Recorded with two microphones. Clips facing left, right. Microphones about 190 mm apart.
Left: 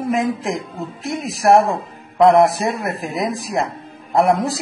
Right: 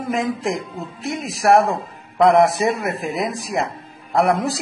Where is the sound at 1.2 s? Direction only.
Centre (ahead or behind).